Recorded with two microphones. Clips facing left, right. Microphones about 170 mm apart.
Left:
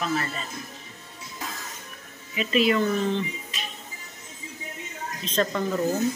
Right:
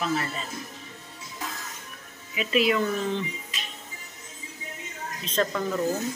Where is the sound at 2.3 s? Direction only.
5° right (ahead or behind).